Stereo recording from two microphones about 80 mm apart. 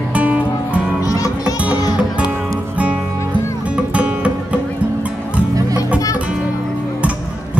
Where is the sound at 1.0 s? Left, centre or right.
Left.